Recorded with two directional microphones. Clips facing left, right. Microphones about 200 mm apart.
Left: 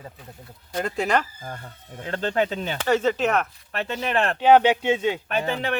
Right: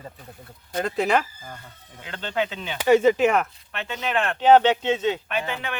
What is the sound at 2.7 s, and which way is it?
Speech, 10° right (ahead or behind).